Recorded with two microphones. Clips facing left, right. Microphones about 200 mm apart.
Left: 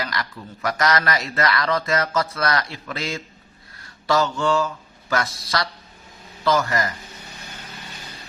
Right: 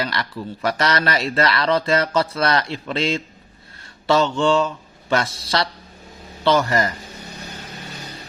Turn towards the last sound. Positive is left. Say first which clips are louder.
# right 3 dB
turn(degrees=-30)  # may be behind; listen again after turning